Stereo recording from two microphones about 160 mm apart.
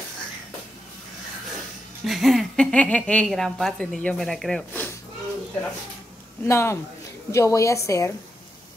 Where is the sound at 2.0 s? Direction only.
Centre (ahead or behind).